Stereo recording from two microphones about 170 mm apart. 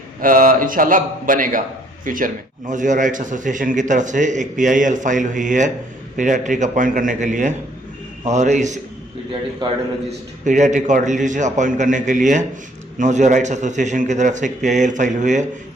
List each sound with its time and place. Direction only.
0.2 s speech: 55° right (ahead or behind)
10.4 s speech: 45° right (ahead or behind)